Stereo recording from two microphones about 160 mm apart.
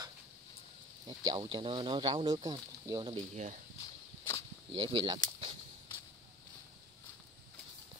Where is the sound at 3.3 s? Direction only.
50° right (ahead or behind).